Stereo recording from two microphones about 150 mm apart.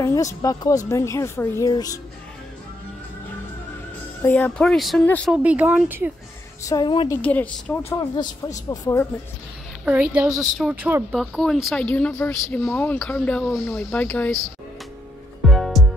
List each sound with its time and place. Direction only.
0.0 s a woman's voice: 20° left (ahead or behind)
4.2 s speech: 10° left (ahead or behind)
5.3 s speech: 10° right (ahead or behind)
6.6 s a woman's voice: 25° left (ahead or behind)
7.2 s speech: 10° left (ahead or behind)
8.6 s a woman's voice: 20° left (ahead or behind)
10.1 s speech: 5° right (ahead or behind)
11.1 s speech: centre (ahead or behind)
15.4 s music: centre (ahead or behind)